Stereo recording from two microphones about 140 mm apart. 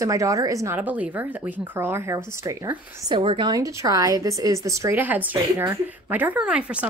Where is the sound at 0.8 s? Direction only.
10° right (ahead or behind).